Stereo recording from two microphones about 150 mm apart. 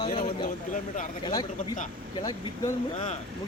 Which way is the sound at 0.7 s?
60° left (ahead or behind).